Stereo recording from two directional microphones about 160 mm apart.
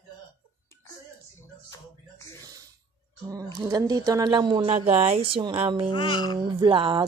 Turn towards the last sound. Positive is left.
turn(degrees=-30)  # may be behind; listen again after turning